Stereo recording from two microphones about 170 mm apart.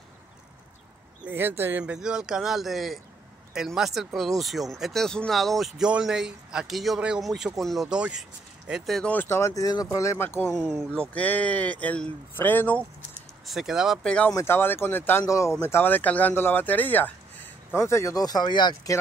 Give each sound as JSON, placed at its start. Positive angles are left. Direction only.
{"t": 1.2, "sound": "speech", "side_deg": -10}
{"t": 10.4, "sound": "speech", "side_deg": 0}
{"t": 13.5, "sound": "speech", "side_deg": 0}